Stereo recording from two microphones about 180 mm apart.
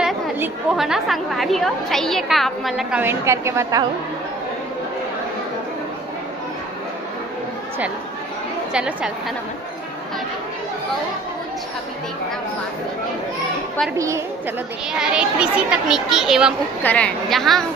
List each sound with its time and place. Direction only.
0.0 s a woman's voice: 5° right (ahead or behind)
8.7 s a woman's voice: 5° right (ahead or behind)
13.9 s a woman's voice: 15° right (ahead or behind)
14.9 s a woman's voice: 5° right (ahead or behind)
16.8 s a woman's voice: 5° left (ahead or behind)